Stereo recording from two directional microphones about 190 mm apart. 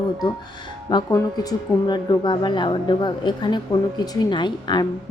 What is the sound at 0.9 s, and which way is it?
A woman's voice, 20° left (ahead or behind).